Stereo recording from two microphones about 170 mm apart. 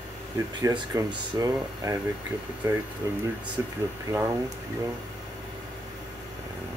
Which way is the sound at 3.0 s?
20° right (ahead or behind).